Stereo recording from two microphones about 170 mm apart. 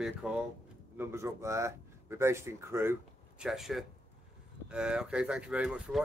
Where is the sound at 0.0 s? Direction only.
5° right (ahead or behind).